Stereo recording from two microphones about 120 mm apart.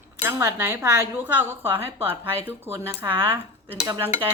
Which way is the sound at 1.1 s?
15° right (ahead or behind).